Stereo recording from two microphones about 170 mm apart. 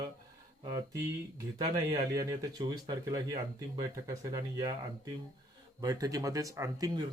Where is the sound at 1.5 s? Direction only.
20° right (ahead or behind).